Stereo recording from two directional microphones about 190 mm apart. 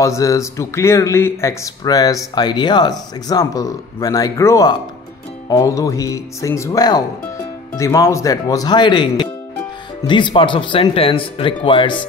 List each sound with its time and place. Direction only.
0.0 s speech: 15° left (ahead or behind)